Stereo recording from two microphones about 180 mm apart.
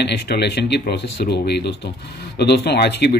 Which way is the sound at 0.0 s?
65° left (ahead or behind).